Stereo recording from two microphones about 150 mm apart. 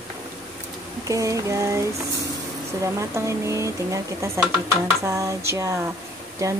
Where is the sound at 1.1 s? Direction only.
20° right (ahead or behind).